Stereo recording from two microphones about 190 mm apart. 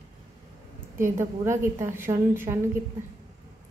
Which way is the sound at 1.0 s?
15° right (ahead or behind).